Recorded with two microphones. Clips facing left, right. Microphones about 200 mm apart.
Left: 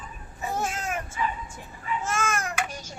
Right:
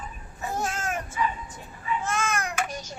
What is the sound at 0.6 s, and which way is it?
Baby cry, centre (ahead or behind).